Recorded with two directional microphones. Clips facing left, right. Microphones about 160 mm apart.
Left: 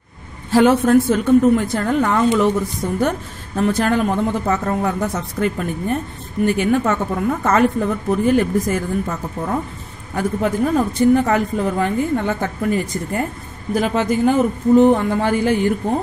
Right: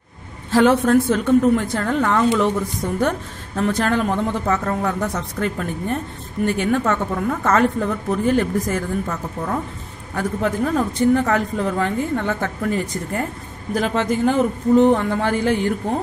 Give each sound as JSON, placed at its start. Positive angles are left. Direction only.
{"t": 0.5, "sound": "a woman's voice", "side_deg": 10}